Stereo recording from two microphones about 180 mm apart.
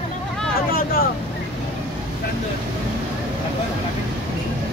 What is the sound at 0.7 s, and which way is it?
Vehicle, 55° left (ahead or behind).